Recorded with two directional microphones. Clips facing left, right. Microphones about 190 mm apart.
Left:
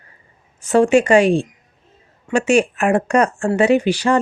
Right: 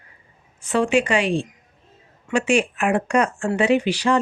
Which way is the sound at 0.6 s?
45° left (ahead or behind).